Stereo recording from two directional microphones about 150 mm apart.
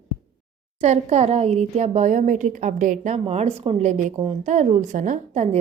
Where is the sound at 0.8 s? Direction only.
50° right (ahead or behind).